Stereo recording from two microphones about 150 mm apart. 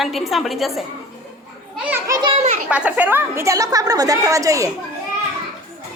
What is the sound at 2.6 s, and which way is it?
A woman's voice, 10° right (ahead or behind).